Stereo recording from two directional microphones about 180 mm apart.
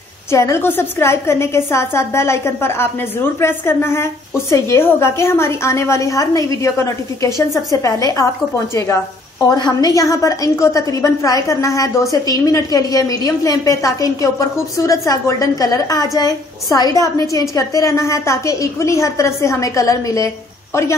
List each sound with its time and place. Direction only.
0.3 s a woman's voice: 15° left (ahead or behind)